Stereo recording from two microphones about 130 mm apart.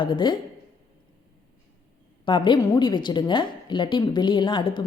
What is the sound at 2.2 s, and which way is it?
A woman's voice, 40° left (ahead or behind).